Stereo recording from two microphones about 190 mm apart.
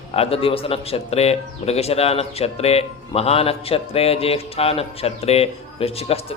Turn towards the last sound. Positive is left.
turn(degrees=30)  # may be behind; listen again after turning